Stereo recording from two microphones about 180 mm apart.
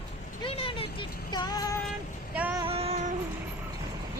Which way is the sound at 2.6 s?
35° right (ahead or behind).